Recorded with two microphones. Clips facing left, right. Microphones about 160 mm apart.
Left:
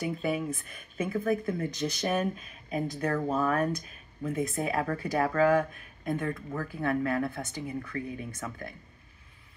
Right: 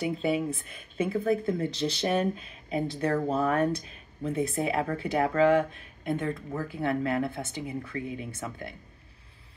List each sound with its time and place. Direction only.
0.0 s speech: 25° right (ahead or behind)